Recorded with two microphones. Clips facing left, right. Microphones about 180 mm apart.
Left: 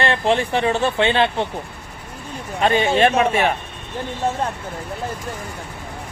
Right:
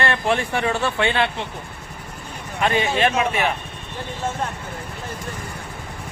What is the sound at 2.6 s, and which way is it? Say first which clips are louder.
Speech: left 4 dB; 30° left (ahead or behind).